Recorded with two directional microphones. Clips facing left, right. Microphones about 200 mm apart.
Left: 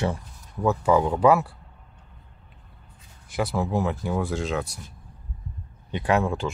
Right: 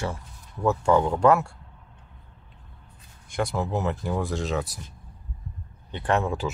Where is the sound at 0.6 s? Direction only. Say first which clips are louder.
Even; 5° left (ahead or behind).